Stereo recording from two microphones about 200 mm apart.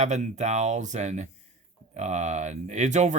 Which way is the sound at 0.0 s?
35° right (ahead or behind).